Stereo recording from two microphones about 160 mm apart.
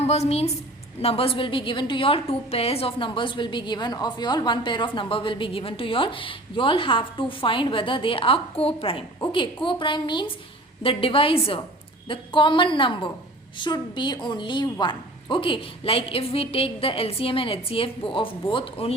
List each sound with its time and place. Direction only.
0.0 s a woman's voice: 40° left (ahead or behind)